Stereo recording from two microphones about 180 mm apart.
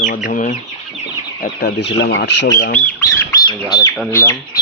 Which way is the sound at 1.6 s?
70° left (ahead or behind).